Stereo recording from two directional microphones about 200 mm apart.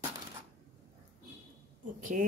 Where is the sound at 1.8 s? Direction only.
40° right (ahead or behind).